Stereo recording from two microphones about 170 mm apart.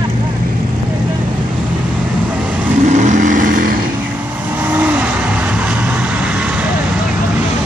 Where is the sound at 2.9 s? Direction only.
45° right (ahead or behind).